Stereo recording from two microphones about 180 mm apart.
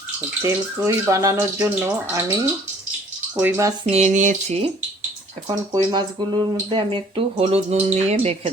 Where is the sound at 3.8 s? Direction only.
35° right (ahead or behind).